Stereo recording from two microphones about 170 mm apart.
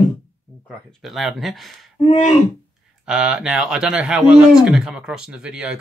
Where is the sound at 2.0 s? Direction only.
45° left (ahead or behind).